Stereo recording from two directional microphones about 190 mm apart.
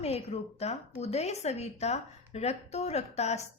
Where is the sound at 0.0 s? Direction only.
30° left (ahead or behind).